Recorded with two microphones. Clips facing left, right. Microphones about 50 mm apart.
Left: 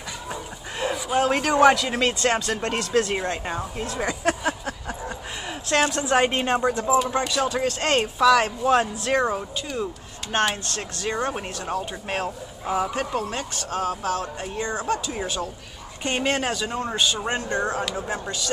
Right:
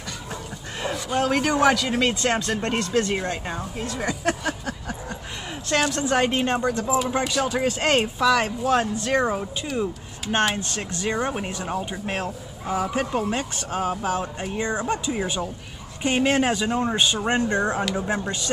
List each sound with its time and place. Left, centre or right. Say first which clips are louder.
0.7 s a sound: left 2 dB; centre
1.4 s speech: left 4 dB; centre
3.9 s a sound: left 1 dB; centre
5.9 s speech: left 1 dB; centre
7.0 s speech: left 1 dB; centre
12.9 s speech: right 2 dB; centre
16.0 s speech: right 3 dB; centre
16.9 s speech: right 2 dB; right